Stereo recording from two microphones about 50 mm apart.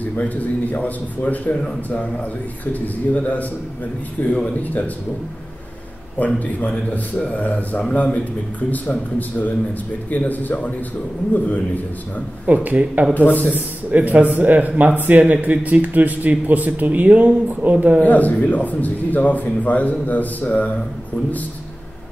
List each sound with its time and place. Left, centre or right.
0.2 s a man's voice: left
6.1 s a man's voice: left
10.1 s a man's voice: left
12.4 s speech: right
13.1 s a man's voice: left
13.6 s speech: right
18.0 s a man's voice: left